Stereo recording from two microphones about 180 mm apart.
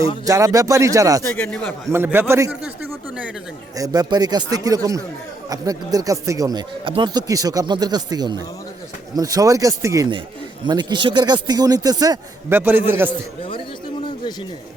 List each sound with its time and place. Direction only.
0.3 s speech: 20° right (ahead or behind)
1.2 s a man's voice: 10° left (ahead or behind)
1.9 s a man's voice: 10° right (ahead or behind)
3.8 s speech: 20° right (ahead or behind)